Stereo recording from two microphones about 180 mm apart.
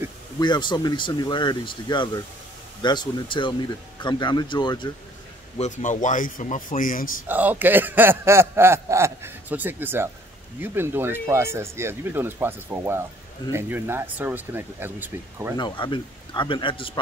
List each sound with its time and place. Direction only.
0.4 s speech: 25° left (ahead or behind)
5.6 s speech: 45° left (ahead or behind)
7.2 s speech: 10° right (ahead or behind)
15.5 s speech: 25° left (ahead or behind)